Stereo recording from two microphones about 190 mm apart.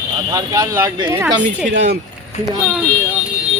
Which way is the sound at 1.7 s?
65° right (ahead or behind).